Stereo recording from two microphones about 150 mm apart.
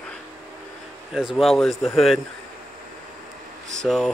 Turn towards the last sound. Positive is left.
turn(degrees=5)  # may be behind; listen again after turning